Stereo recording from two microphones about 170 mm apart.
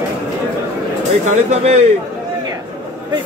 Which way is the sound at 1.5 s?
40° right (ahead or behind).